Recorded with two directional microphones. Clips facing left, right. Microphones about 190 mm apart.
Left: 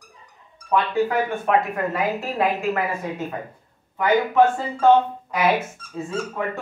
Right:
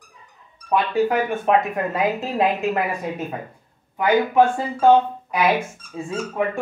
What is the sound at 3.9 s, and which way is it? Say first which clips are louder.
Speech: right 1 dB; 15° right (ahead or behind).